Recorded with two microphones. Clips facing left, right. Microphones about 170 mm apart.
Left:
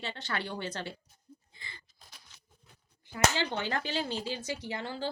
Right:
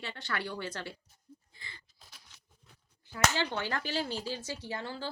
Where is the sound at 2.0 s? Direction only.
Centre (ahead or behind).